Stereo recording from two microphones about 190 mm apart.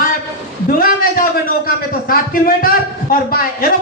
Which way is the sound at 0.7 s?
50° left (ahead or behind).